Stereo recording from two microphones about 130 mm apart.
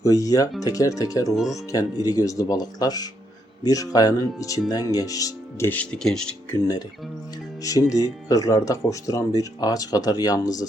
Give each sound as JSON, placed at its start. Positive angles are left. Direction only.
{"t": 0.0, "sound": "speech", "side_deg": 25}
{"t": 7.6, "sound": "speech", "side_deg": 25}